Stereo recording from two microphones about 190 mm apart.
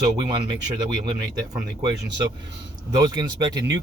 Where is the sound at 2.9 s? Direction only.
20° right (ahead or behind).